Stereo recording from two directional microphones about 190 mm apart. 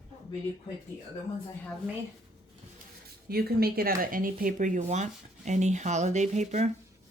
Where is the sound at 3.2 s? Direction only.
55° right (ahead or behind); by 6.7 s 35° right (ahead or behind).